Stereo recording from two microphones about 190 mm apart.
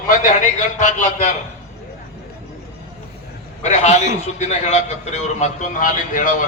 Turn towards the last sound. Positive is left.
turn(degrees=45)  # may be behind; listen again after turning